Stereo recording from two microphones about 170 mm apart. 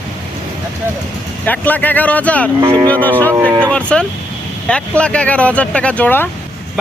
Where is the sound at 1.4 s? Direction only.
10° left (ahead or behind).